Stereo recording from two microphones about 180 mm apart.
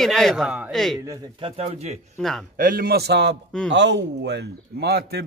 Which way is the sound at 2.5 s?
55° right (ahead or behind).